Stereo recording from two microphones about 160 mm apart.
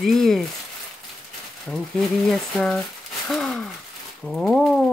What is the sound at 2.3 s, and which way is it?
Speech, 5° left (ahead or behind).